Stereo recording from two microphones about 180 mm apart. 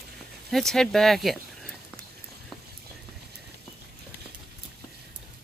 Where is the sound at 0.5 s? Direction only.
Centre (ahead or behind).